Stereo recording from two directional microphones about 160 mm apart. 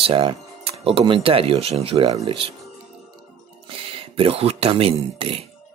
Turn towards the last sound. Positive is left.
turn(degrees=-35)  # may be behind; listen again after turning